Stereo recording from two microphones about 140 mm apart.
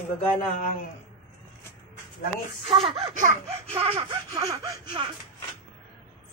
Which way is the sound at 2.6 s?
40° right (ahead or behind).